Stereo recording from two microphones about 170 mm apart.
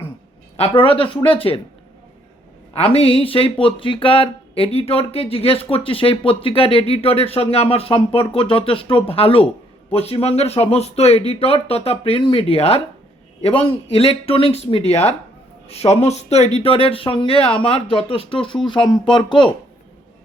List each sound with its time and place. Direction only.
0.5 s speech: 35° left (ahead or behind)
2.7 s speech: 35° left (ahead or behind)